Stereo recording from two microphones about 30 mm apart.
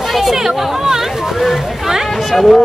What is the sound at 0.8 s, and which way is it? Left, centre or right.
Speech, centre.